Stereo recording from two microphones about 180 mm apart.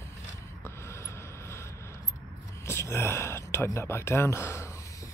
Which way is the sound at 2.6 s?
15° left (ahead or behind).